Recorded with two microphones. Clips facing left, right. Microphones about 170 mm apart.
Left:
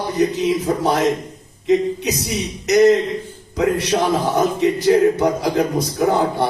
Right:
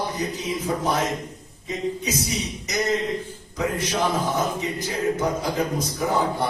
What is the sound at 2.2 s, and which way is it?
Speech, 75° left (ahead or behind).